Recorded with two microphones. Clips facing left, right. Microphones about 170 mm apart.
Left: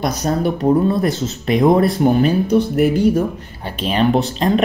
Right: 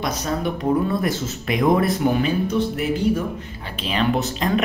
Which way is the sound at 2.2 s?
45° left (ahead or behind).